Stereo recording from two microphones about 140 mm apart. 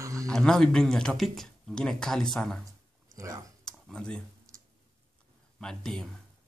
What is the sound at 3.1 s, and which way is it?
Computer keyboard, 25° right (ahead or behind).